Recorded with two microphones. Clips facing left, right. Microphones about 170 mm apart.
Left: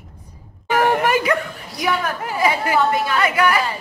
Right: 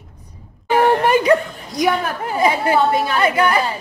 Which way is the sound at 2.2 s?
25° right (ahead or behind).